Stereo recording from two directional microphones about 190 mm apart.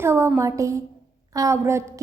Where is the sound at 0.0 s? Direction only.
15° right (ahead or behind).